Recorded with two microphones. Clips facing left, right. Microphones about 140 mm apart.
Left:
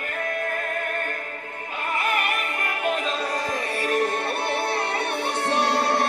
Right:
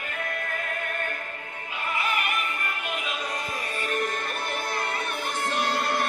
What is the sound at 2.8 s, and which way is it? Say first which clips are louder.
Music: left 11 dB; 40° left (ahead or behind).